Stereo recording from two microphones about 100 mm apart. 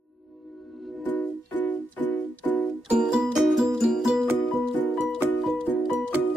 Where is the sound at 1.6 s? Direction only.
15° left (ahead or behind).